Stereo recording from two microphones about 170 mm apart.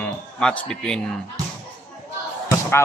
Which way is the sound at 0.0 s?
5° left (ahead or behind).